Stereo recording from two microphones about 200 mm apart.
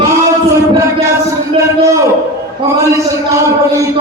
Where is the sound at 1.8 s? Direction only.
15° right (ahead or behind).